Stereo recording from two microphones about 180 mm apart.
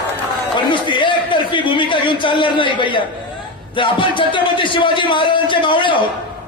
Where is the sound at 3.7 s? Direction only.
30° left (ahead or behind).